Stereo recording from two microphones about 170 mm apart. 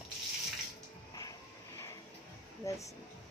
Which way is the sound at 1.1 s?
20° left (ahead or behind).